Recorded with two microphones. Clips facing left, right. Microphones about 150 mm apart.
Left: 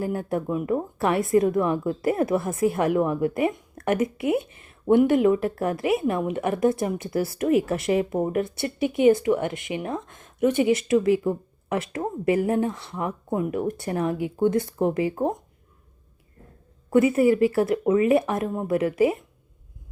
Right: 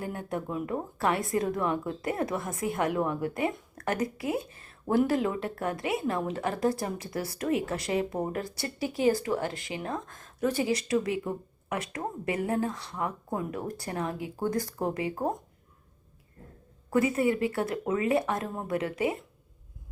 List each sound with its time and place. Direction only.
0.1 s speech: 30° left (ahead or behind)
16.9 s speech: 25° left (ahead or behind)
17.2 s speech: 25° right (ahead or behind)
17.7 s speech: 25° left (ahead or behind)